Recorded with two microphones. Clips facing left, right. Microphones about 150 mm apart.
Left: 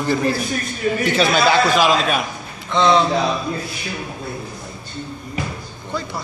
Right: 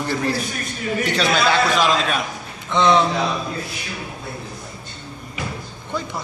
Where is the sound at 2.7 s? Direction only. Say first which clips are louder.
Left 1 dB; 15° right (ahead or behind).